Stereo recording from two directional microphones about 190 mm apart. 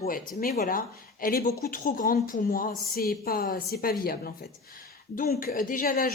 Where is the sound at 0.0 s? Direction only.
45° left (ahead or behind).